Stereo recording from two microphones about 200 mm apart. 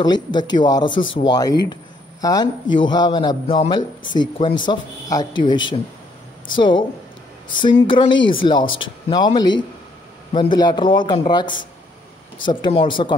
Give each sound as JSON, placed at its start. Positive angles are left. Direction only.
{"t": 0.0, "sound": "a man's voice", "side_deg": 20}
{"t": 7.8, "sound": "a man's voice", "side_deg": 25}